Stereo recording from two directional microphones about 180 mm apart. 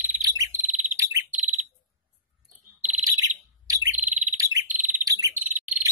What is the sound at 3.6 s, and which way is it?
Bird, 20° right (ahead or behind).